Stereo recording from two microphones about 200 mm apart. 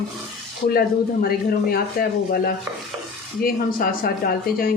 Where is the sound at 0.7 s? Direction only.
50° left (ahead or behind).